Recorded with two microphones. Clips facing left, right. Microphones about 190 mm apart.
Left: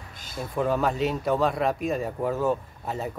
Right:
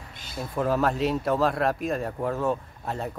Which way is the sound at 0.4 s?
Centre (ahead or behind).